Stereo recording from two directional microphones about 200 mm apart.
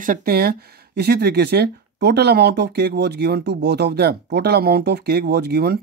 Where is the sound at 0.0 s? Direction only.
45° right (ahead or behind).